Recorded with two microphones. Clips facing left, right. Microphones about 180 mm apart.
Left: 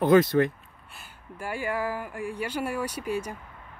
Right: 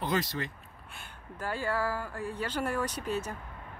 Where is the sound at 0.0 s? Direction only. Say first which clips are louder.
Left 12 dB; 55° left (ahead or behind).